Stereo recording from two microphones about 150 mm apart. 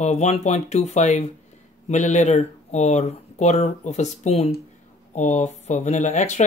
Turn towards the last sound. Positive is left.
turn(degrees=50)  # may be behind; listen again after turning